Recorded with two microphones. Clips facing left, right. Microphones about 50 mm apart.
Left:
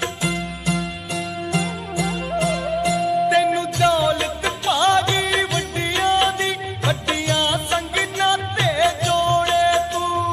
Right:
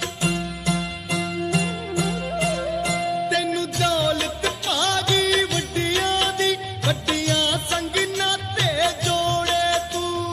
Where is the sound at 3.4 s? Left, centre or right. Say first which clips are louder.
Left 5 dB; centre.